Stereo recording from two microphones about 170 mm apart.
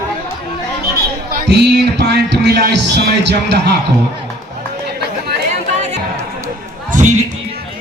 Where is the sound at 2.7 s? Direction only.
90° right.